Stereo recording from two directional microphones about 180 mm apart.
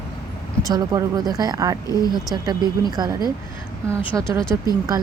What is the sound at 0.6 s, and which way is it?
Speech, 20° right (ahead or behind).